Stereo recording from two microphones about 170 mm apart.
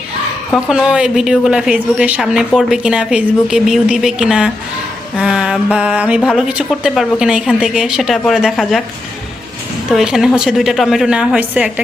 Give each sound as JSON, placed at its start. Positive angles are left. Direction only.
{"t": 0.5, "sound": "a woman's voice", "side_deg": -5}
{"t": 9.9, "sound": "a woman's voice", "side_deg": -5}